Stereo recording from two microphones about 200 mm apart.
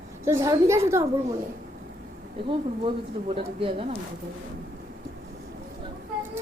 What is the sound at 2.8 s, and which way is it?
A child's voice, 25° right (ahead or behind).